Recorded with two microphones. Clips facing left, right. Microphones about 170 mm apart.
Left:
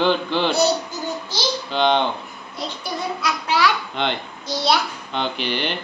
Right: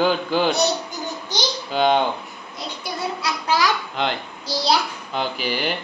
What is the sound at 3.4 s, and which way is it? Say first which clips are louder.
Babbling: left 1 dB; 40° right (ahead or behind).